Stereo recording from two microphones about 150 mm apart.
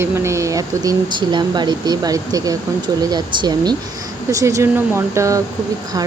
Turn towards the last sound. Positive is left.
turn(degrees=-20)  # may be behind; listen again after turning